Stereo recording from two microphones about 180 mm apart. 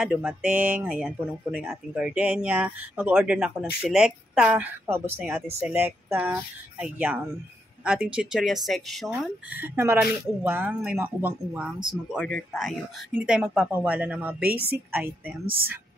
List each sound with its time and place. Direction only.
0.0 s speech: 5° right (ahead or behind)
11.9 s speech: centre (ahead or behind)
15.4 s speech: 55° right (ahead or behind)